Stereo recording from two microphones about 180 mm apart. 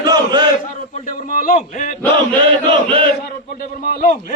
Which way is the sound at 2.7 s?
30° right (ahead or behind).